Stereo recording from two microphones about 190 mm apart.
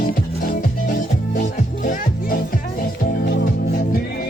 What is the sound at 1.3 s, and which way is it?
Music, 45° left (ahead or behind).